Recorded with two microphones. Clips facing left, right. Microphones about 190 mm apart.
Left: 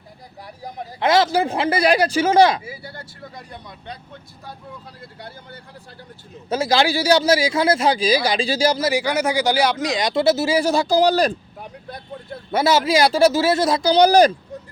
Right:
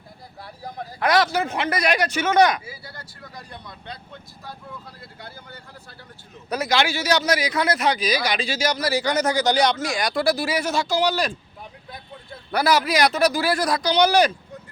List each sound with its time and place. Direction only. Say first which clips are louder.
0.4 s speech: left 1 dB; 15° left (ahead or behind)
6.5 s speech: left 4 dB; 30° left (ahead or behind)
8.9 s speech: left 1 dB; 10° left (ahead or behind)
9.8 s speech: left 4 dB; 20° left (ahead or behind); by 11.3 s 40° left (ahead or behind)
12.5 s speech: left 3 dB; 25° left (ahead or behind)